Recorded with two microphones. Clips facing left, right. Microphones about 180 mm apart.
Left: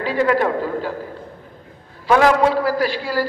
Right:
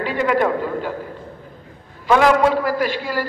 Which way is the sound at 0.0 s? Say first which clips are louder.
Left 2 dB; 35° left (ahead or behind).